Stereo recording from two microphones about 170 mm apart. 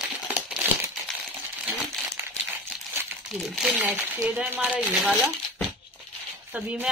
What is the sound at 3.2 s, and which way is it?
Speech, centre (ahead or behind).